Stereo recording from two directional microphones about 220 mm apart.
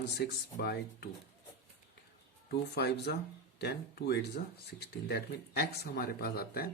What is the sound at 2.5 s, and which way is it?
Speech, 50° left (ahead or behind).